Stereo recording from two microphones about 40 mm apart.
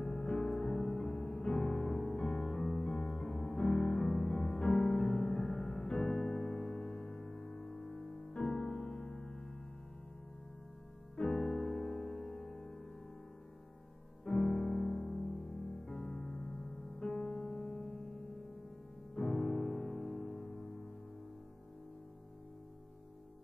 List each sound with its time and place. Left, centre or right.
0.0 s music: centre
11.2 s music: centre
14.2 s music: centre
17.6 s music: centre